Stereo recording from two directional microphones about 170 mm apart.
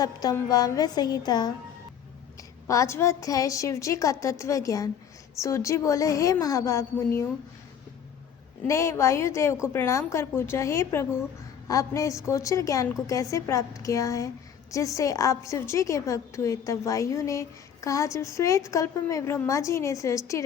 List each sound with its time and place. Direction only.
0.0 s a woman's voice: 25° left (ahead or behind)
2.6 s a woman's voice: 20° left (ahead or behind)
8.6 s a woman's voice: 15° left (ahead or behind)